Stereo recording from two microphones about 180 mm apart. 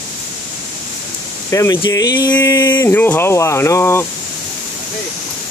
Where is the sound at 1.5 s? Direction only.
20° left (ahead or behind).